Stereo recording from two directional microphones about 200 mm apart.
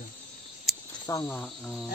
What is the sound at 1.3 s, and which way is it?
Cricket, 5° left (ahead or behind).